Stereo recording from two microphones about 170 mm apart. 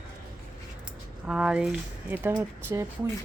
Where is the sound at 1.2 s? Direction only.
5° right (ahead or behind).